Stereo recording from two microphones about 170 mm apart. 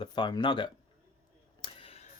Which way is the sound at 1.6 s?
35° left (ahead or behind).